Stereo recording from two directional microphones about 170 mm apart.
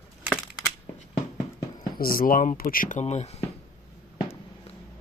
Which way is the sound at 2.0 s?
55° left (ahead or behind).